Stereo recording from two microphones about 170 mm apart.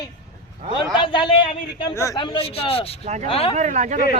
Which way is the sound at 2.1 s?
30° left (ahead or behind).